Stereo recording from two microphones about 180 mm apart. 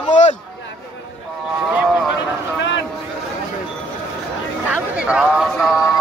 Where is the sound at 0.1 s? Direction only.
40° left (ahead or behind).